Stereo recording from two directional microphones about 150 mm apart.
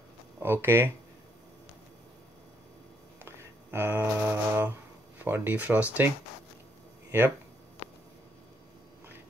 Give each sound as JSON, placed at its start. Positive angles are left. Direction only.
{"t": 0.4, "sound": "speech", "side_deg": -15}
{"t": 3.2, "sound": "mantra", "side_deg": -15}
{"t": 5.2, "sound": "speech", "side_deg": -15}